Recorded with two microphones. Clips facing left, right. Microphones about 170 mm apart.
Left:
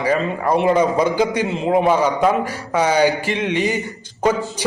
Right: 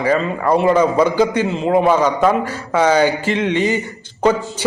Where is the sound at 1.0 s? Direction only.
15° left (ahead or behind).